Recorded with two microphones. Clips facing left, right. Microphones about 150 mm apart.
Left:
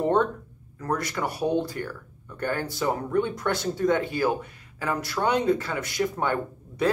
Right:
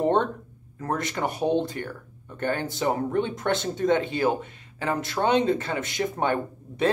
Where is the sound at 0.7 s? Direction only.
25° right (ahead or behind).